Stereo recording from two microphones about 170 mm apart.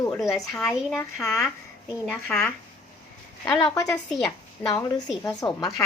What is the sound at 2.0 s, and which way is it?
Speech, 5° left (ahead or behind).